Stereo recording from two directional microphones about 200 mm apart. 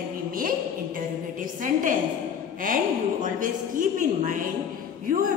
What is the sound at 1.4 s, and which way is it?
Speech, 40° right (ahead or behind).